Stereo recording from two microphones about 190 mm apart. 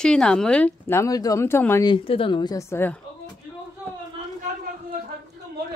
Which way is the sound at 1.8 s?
30° left (ahead or behind).